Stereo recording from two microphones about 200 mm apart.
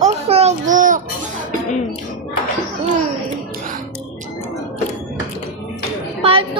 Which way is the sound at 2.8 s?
35° right (ahead or behind).